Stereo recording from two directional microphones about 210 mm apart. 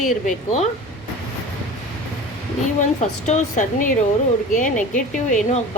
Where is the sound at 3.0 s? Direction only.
35° left (ahead or behind).